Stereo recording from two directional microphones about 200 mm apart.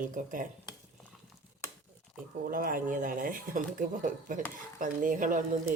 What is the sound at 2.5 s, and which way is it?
Speech, 45° right (ahead or behind).